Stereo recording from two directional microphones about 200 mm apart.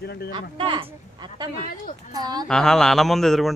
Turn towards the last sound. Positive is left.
turn(degrees=0)  # may be behind; listen again after turning